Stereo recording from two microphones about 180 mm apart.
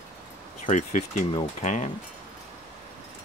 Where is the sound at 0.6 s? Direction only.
45° left (ahead or behind).